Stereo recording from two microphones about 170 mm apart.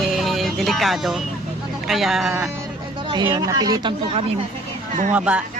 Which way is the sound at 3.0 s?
30° right (ahead or behind).